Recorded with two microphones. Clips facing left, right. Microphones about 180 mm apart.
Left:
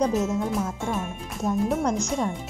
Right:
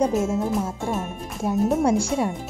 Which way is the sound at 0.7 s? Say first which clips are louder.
Right 2 dB; 25° right (ahead or behind).